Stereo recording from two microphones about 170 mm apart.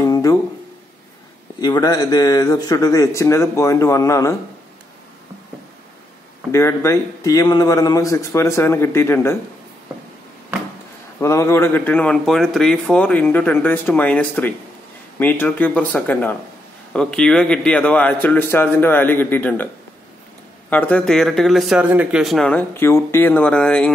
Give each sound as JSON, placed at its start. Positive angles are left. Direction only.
{"t": 0.0, "sound": "a sound", "side_deg": 20}
{"t": 1.6, "sound": "speech", "side_deg": 25}
{"t": 6.5, "sound": "speech", "side_deg": 15}
{"t": 11.1, "sound": "speech", "side_deg": 15}
{"t": 20.7, "sound": "speech", "side_deg": 5}